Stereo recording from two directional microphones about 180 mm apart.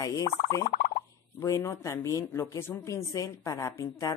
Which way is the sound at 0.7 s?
45° left (ahead or behind).